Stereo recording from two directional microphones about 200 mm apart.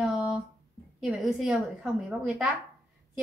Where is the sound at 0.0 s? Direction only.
5° right (ahead or behind).